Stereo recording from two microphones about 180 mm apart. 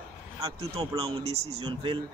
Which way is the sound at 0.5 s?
30° right (ahead or behind).